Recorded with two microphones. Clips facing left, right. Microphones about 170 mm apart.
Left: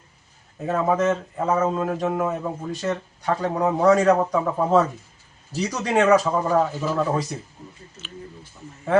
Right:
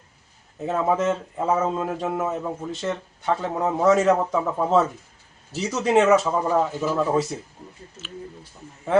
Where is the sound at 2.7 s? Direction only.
25° right (ahead or behind).